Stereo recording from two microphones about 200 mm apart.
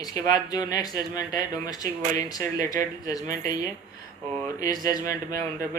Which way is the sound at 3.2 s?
45° right (ahead or behind).